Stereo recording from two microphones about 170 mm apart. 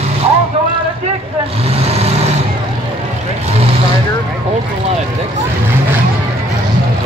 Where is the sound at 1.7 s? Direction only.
40° right (ahead or behind).